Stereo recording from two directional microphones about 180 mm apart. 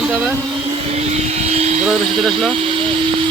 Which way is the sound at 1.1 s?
35° right (ahead or behind).